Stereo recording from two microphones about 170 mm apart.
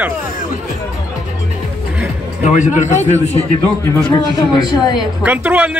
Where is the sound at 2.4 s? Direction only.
45° left (ahead or behind).